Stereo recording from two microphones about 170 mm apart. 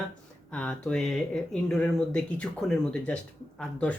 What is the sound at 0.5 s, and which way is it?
Speech, 5° left (ahead or behind).